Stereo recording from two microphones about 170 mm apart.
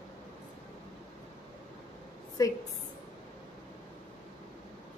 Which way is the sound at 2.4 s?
20° left (ahead or behind).